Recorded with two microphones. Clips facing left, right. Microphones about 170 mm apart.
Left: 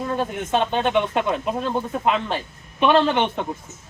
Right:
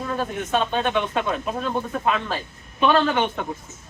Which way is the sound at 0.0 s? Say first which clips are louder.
Left 2 dB; 20° left (ahead or behind).